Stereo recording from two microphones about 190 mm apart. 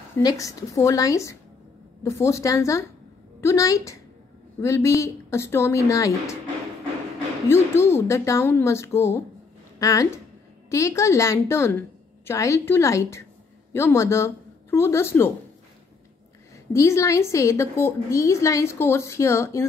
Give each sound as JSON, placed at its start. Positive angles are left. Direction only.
{"t": 0.1, "sound": "a woman's voice", "side_deg": 20}
{"t": 7.4, "sound": "a woman's voice", "side_deg": 15}
{"t": 16.7, "sound": "a woman's voice", "side_deg": 15}